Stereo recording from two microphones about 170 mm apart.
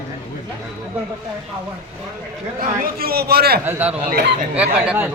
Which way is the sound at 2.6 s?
60° right (ahead or behind).